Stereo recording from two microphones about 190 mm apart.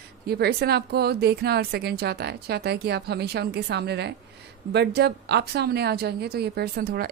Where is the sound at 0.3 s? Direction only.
55° right (ahead or behind).